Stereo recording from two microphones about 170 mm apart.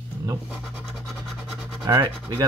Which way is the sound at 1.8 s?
25° right (ahead or behind).